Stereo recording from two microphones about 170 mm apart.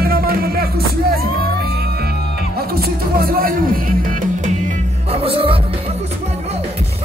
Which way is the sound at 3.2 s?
55° right (ahead or behind).